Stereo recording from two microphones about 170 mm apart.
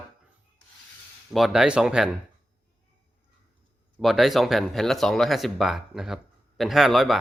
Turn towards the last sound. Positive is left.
turn(degrees=0)  # may be behind; listen again after turning